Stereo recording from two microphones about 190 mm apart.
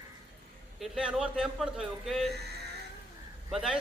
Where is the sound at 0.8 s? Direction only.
5° right (ahead or behind).